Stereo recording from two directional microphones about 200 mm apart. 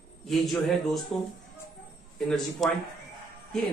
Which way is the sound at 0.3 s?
Centre (ahead or behind).